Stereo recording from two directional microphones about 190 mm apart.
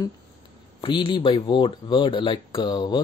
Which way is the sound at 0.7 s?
25° left (ahead or behind).